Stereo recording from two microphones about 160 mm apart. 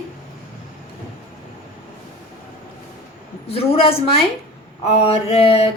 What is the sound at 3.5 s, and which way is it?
Speech, 35° left (ahead or behind).